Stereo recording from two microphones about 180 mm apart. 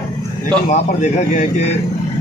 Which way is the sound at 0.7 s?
40° left (ahead or behind).